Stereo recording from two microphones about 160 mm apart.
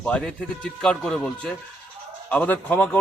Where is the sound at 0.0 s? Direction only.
5° left (ahead or behind).